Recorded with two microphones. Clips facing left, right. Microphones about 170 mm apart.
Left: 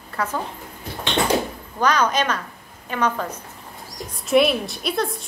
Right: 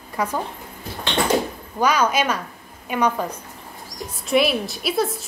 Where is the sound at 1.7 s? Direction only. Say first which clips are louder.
Right 1 dB; 10° right (ahead or behind).